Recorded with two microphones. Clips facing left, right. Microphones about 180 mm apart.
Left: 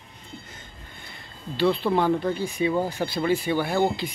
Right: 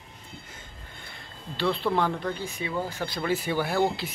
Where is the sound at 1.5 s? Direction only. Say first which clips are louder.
Left 4 dB; centre (ahead or behind).